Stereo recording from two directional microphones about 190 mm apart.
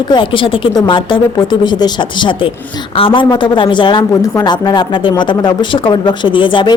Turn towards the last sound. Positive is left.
turn(degrees=25)  # may be behind; listen again after turning